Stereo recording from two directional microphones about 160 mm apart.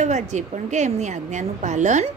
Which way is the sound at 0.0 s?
45° right (ahead or behind).